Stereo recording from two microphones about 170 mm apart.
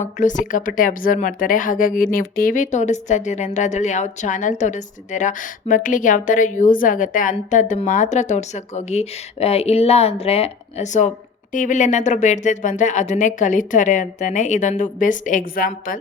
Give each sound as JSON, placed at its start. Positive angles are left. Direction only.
{"t": 0.0, "sound": "speech", "side_deg": 50}